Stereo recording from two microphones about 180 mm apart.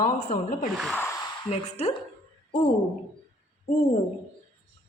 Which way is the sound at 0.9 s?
15° left (ahead or behind).